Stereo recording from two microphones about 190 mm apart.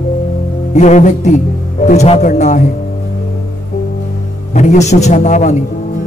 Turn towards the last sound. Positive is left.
turn(degrees=40)  # may be behind; listen again after turning